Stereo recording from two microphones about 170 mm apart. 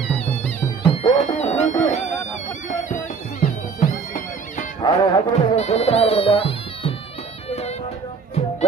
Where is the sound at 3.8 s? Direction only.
50° left (ahead or behind).